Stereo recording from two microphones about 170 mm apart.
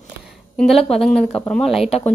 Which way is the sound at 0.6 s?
Centre (ahead or behind).